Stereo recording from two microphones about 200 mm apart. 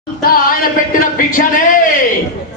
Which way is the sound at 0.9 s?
45° left (ahead or behind).